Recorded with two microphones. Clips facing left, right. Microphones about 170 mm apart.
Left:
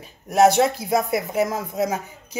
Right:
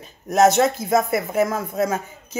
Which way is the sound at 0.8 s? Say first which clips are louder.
Right 2 dB; 45° right (ahead or behind).